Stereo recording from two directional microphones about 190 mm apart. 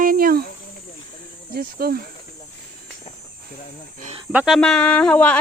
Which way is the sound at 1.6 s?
50° right (ahead or behind).